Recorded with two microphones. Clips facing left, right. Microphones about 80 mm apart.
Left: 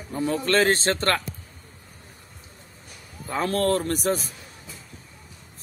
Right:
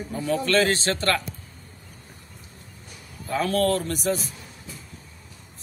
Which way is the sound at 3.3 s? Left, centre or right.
Left.